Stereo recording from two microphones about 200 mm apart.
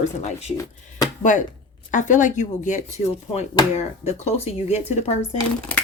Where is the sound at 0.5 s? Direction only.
20° left (ahead or behind).